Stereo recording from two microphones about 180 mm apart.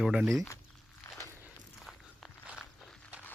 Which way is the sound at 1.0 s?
15° left (ahead or behind).